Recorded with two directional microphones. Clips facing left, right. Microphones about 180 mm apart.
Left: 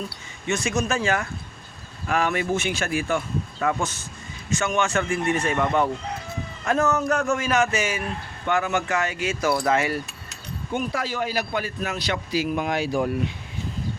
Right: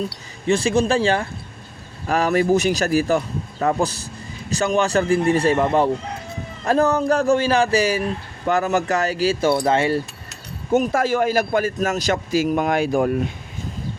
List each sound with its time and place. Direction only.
0.4 s speech: 30° right (ahead or behind)
10.7 s a man's voice: 45° right (ahead or behind)